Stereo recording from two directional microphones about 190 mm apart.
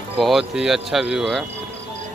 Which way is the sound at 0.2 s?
Centre (ahead or behind).